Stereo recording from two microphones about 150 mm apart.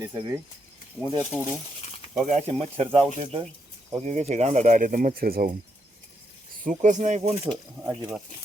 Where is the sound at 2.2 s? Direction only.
45° right (ahead or behind).